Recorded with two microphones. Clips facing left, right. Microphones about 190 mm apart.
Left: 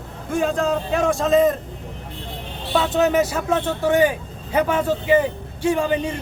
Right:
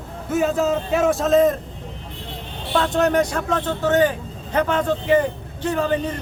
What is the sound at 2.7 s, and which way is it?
Speech, 5° left (ahead or behind).